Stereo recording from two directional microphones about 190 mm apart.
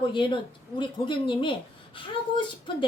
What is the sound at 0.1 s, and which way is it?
A woman's voice, 25° left (ahead or behind).